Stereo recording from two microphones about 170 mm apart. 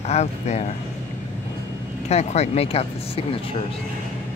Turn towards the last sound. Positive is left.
turn(degrees=35)  # may be behind; listen again after turning